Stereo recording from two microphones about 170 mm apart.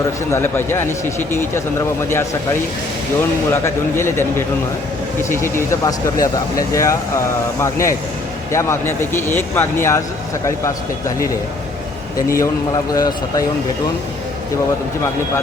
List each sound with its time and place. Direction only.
0.3 s speech: 15° left (ahead or behind)
3.5 s speech: 15° left (ahead or behind)
12.3 s a man's voice: 20° left (ahead or behind)